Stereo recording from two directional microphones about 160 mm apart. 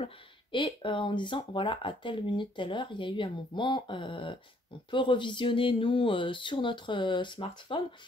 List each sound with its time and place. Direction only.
0.0 s speech: 30° left (ahead or behind)